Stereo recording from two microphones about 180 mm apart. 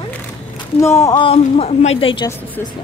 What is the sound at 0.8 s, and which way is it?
Speech, 15° left (ahead or behind).